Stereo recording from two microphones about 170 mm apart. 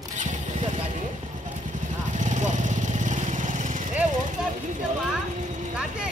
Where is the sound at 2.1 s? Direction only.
45° right (ahead or behind).